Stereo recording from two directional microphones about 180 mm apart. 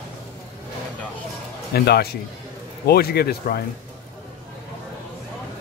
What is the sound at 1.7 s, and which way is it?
Speech, 60° left (ahead or behind).